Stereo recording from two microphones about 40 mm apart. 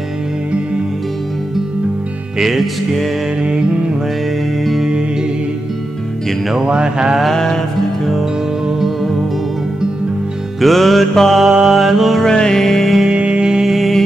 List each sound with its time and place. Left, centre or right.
2.5 s mantra: centre
3.4 s music: right
6.5 s music: centre
10.6 s mantra: centre
11.4 s music: centre
12.3 s music: centre
13.2 s music: right
13.7 s music: centre